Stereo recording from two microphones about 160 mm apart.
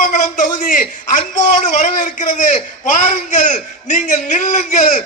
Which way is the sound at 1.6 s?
50° left (ahead or behind).